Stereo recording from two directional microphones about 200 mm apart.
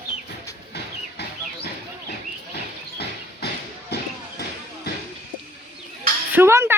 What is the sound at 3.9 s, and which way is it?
Basketball bounce, 55° left (ahead or behind).